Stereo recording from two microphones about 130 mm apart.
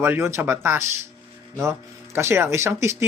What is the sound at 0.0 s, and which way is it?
Speech, 15° right (ahead or behind).